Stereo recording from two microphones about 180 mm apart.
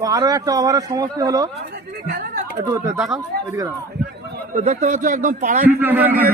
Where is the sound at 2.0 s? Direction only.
50° right (ahead or behind).